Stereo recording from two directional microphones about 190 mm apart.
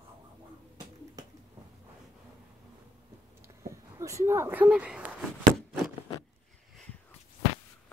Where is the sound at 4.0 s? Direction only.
15° right (ahead or behind).